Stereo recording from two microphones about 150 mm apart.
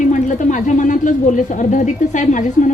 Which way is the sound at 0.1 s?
55° left (ahead or behind).